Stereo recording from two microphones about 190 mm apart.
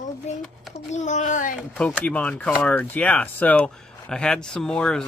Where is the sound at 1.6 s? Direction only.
5° left (ahead or behind).